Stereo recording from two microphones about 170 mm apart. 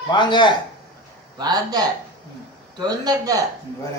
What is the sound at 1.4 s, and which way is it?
Speech, 25° right (ahead or behind).